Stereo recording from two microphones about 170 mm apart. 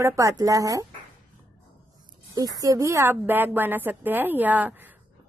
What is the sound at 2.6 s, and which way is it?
A woman's voice, 20° right (ahead or behind).